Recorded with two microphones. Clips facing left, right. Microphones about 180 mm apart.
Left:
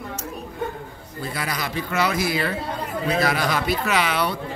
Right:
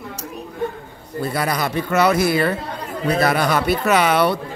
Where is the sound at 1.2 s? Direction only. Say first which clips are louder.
Right 7 dB; 55° right (ahead or behind).